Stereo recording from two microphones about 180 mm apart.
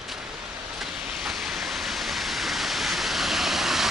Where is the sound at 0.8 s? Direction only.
Centre (ahead or behind).